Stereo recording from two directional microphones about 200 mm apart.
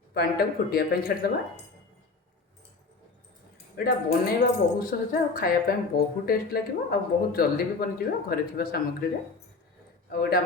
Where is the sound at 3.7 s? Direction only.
50° left (ahead or behind).